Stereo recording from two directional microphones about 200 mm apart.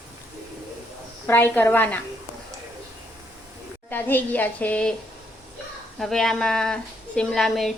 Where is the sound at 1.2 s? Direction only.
10° left (ahead or behind).